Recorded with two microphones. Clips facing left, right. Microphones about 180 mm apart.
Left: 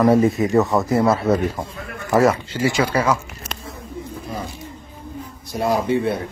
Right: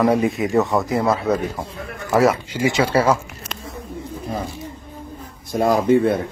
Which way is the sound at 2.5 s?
20° right (ahead or behind).